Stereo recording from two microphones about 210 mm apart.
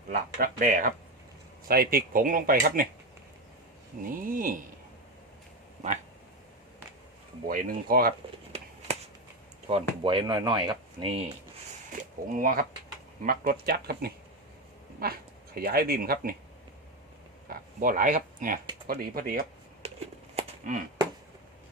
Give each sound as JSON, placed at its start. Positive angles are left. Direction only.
{"t": 0.1, "sound": "speech", "side_deg": -45}
{"t": 4.0, "sound": "speech", "side_deg": -40}
{"t": 7.4, "sound": "speech", "side_deg": -45}
{"t": 9.6, "sound": "speech", "side_deg": -25}
{"t": 11.9, "sound": "a sound", "side_deg": -40}
{"t": 13.2, "sound": "speech", "side_deg": -45}
{"t": 17.5, "sound": "speech", "side_deg": -40}
{"t": 19.8, "sound": "a sound", "side_deg": -30}